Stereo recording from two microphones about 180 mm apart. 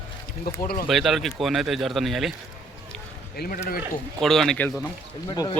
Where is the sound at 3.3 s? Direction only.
55° left (ahead or behind).